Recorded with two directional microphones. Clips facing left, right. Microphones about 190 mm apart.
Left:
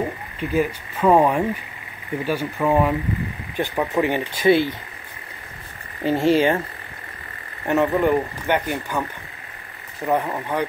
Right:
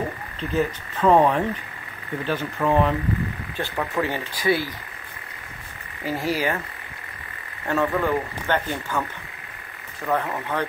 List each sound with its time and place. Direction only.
0.4 s speech: 10° left (ahead or behind)
6.0 s speech: 25° left (ahead or behind)
7.6 s speech: 20° left (ahead or behind)
10.0 s speech: 15° left (ahead or behind)